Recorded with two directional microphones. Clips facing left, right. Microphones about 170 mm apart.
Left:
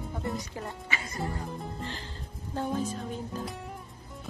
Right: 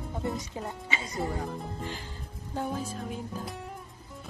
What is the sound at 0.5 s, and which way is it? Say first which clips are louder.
Speech: right 1 dB; 20° right (ahead or behind).